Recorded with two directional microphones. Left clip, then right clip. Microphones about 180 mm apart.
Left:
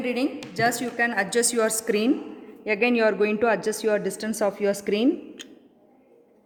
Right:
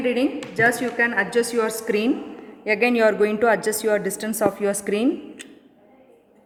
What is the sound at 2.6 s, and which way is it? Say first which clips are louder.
Speech: right 3 dB; 15° left (ahead or behind).